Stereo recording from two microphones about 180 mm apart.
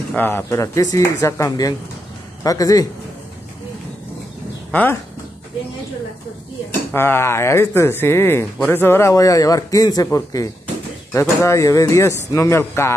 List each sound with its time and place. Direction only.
0.1 s speech: 10° left (ahead or behind)
4.6 s speech: 10° left (ahead or behind)
6.9 s speech: 15° left (ahead or behind)